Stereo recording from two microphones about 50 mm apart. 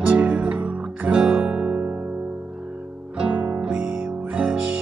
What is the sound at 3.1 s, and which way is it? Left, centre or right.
Music, right.